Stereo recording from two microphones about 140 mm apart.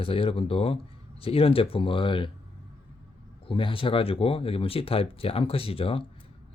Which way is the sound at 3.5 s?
40° left (ahead or behind).